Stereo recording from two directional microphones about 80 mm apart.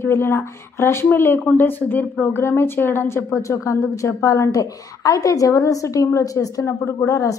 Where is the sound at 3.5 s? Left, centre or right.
Left.